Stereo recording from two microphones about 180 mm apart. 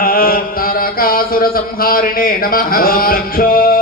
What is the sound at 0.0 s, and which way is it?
Mantra, 55° left (ahead or behind).